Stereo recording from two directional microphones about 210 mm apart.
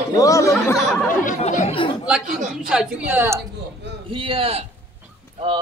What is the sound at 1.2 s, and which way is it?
Speech, 35° left (ahead or behind).